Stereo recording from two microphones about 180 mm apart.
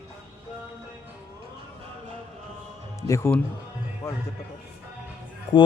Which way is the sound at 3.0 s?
15° left (ahead or behind).